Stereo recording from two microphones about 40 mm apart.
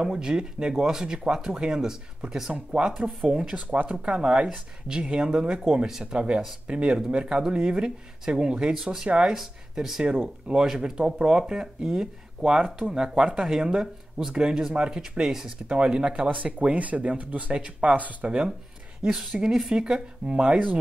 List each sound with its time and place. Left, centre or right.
0.0 s speech: centre
2.5 s speech: right
3.5 s speech: right; by 6.1 s centre
6.1 s speech: right
9.3 s speech: centre
10.1 s speech: right
14.2 s speech: centre
14.7 s speech: right
15.0 s speech: centre
16.4 s speech: right
17.9 s speech: right
19.0 s speech: centre